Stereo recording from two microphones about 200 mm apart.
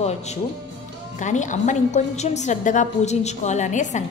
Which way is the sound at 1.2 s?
40° left (ahead or behind).